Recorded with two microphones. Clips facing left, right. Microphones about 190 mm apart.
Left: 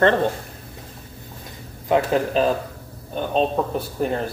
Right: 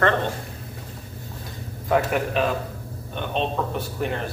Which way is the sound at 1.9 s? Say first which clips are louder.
Left 3 dB; 30° left (ahead or behind).